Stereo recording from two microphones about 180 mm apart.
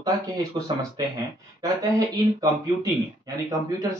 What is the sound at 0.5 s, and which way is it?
Speech, 25° right (ahead or behind).